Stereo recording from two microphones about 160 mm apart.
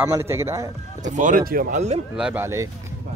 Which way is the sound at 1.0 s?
50° right (ahead or behind).